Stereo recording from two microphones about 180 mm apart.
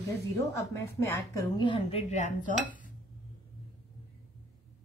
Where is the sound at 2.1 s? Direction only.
40° left (ahead or behind).